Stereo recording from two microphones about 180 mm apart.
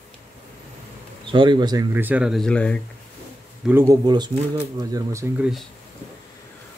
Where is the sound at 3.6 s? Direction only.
15° right (ahead or behind).